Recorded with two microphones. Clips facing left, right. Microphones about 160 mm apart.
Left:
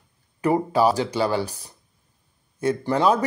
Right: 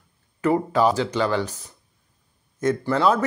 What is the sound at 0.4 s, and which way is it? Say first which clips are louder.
Speech: even; 15° left (ahead or behind).